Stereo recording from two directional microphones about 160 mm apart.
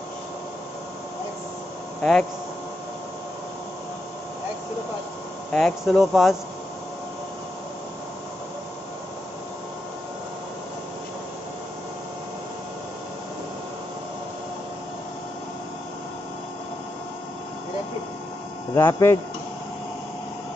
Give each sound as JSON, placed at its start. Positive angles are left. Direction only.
{"t": 2.0, "sound": "speech", "side_deg": 5}
{"t": 5.5, "sound": "speech", "side_deg": 5}
{"t": 18.8, "sound": "speech", "side_deg": 15}